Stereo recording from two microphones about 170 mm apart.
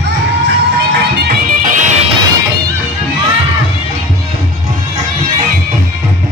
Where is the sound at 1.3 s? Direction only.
50° right (ahead or behind).